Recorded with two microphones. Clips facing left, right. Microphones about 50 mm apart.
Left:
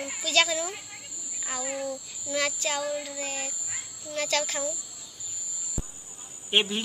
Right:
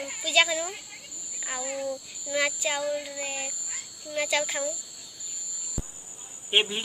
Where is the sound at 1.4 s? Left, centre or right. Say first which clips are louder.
Even; centre.